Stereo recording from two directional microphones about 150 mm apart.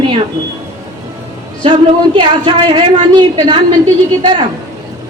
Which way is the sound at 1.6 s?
30° right (ahead or behind).